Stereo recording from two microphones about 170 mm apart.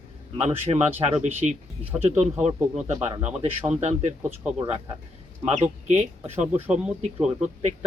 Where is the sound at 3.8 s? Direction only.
40° right (ahead or behind).